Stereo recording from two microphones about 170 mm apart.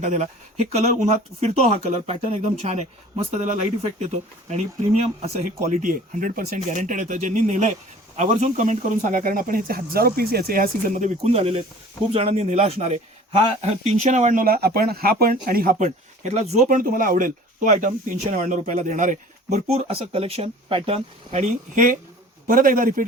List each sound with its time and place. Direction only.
0.0 s a man's voice: 45° right (ahead or behind)
14.4 s speech: 65° right (ahead or behind)